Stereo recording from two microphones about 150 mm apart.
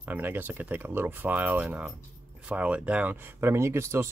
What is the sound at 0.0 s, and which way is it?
Speech, 10° right (ahead or behind).